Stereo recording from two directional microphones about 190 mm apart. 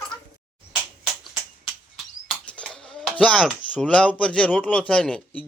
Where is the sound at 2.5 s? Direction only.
5° left (ahead or behind).